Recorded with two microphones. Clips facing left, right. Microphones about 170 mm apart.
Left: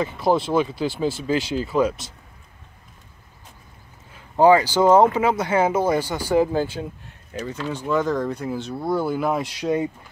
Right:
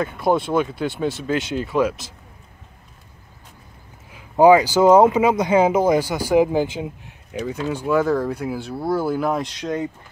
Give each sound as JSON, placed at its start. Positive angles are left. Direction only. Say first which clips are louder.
{"t": 0.0, "sound": "speech", "louder": "right 1 dB", "side_deg": 0}
{"t": 4.1, "sound": "speech", "louder": "right 2 dB", "side_deg": -10}